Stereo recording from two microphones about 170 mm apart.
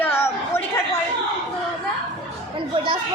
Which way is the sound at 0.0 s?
15° left (ahead or behind).